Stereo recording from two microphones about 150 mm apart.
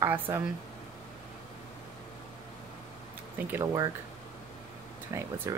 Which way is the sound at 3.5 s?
20° right (ahead or behind).